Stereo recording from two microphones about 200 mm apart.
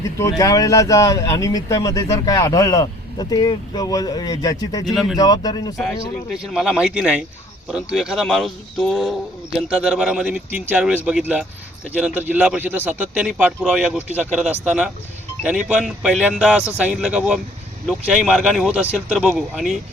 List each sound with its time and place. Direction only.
0.2 s speech: 15° left (ahead or behind)
4.9 s speech: centre (ahead or behind)
5.1 s speech: 20° left (ahead or behind)
6.4 s speech: 5° right (ahead or behind)